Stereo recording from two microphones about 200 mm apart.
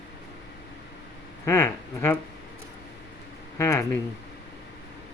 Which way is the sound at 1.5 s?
10° left (ahead or behind).